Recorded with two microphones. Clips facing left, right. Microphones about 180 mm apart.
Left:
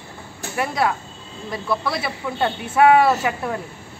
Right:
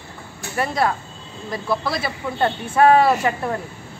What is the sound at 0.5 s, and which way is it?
Speech, 5° left (ahead or behind).